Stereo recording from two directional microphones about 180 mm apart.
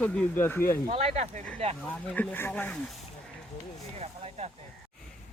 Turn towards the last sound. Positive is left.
turn(degrees=-35)  # may be behind; listen again after turning